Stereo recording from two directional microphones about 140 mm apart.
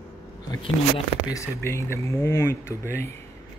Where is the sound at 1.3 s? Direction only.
20° left (ahead or behind).